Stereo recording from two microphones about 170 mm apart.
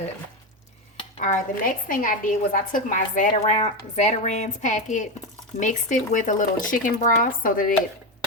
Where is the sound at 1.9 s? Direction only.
55° left (ahead or behind).